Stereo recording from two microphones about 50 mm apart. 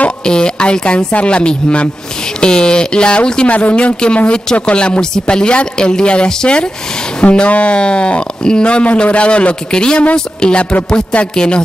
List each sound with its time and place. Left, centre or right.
0.2 s speech: centre